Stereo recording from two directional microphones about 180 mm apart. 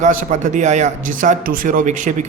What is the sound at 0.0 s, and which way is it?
A man's voice, 45° right (ahead or behind).